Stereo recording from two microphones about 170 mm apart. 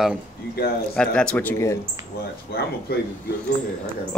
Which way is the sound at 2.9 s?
70° left (ahead or behind).